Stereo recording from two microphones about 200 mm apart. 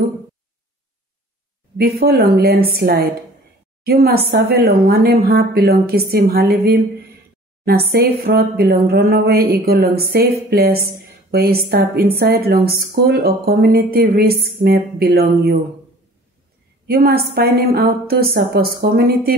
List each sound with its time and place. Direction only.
1.8 s speech: 50° right (ahead or behind)
16.8 s speech: 50° right (ahead or behind)